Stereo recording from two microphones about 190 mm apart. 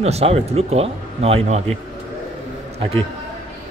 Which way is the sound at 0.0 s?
35° right (ahead or behind).